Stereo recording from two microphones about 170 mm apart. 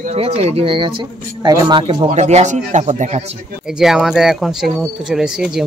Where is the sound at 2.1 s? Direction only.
40° right (ahead or behind).